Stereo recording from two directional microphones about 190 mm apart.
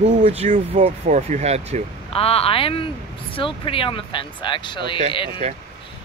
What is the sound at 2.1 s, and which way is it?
Speech, 30° left (ahead or behind).